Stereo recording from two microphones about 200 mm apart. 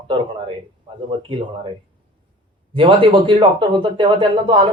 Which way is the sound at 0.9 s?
25° right (ahead or behind).